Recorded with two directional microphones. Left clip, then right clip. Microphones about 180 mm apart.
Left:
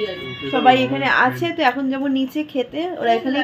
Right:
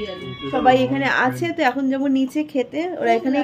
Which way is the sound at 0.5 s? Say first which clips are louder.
Left 1 dB; 15° left (ahead or behind).